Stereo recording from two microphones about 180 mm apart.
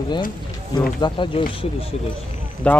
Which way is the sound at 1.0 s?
25° left (ahead or behind).